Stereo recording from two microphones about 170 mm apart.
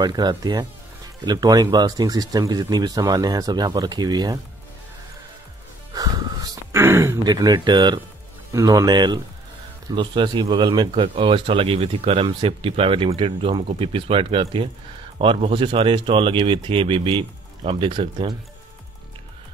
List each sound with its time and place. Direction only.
0.0 s speech: 25° right (ahead or behind)
5.9 s a sound: 20° right (ahead or behind)
8.5 s speech: 20° right (ahead or behind)